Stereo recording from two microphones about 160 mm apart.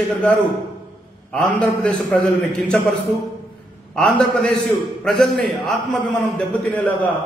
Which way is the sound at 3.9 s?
5° left (ahead or behind).